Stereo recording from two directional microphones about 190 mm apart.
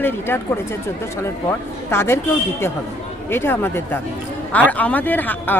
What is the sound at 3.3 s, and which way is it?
A woman's voice, 10° left (ahead or behind).